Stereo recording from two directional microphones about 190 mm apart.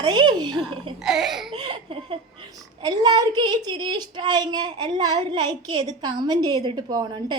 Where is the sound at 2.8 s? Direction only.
20° right (ahead or behind).